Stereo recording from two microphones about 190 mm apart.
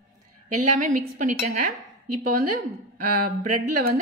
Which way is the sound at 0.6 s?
40° right (ahead or behind).